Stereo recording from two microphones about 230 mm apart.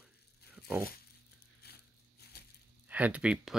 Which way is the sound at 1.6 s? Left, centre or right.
Left.